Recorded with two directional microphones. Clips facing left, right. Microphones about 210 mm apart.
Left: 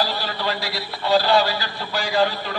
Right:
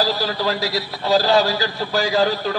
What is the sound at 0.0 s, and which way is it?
A man's voice, 40° right (ahead or behind).